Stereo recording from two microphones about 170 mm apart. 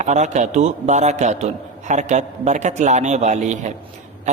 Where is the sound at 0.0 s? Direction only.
45° right (ahead or behind).